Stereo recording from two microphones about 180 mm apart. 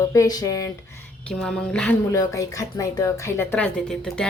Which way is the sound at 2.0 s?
20° left (ahead or behind).